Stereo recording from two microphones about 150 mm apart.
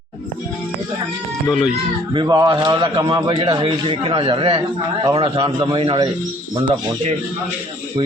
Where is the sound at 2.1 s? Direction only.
30° right (ahead or behind).